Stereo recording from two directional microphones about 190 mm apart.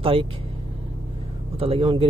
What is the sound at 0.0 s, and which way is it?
Speech, 30° right (ahead or behind).